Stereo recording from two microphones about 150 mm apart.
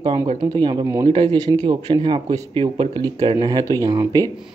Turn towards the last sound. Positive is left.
turn(degrees=-25)  # may be behind; listen again after turning